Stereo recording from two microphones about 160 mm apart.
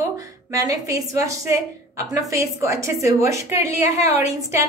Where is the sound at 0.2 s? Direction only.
20° right (ahead or behind).